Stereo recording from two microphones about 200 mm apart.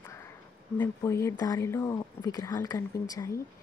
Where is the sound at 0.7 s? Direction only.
15° left (ahead or behind).